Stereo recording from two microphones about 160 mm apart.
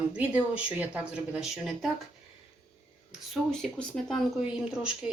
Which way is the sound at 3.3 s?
5° left (ahead or behind).